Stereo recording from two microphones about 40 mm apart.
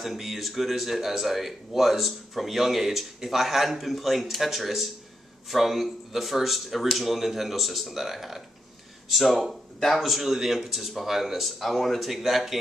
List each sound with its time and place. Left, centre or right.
0.0 s speech: centre
11.6 s speech: centre